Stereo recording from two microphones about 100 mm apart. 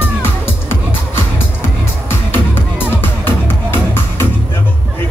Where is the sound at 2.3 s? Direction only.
20° left (ahead or behind).